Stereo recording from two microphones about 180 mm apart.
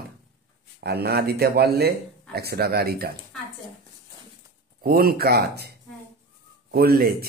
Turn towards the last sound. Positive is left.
turn(degrees=-60)  # may be behind; listen again after turning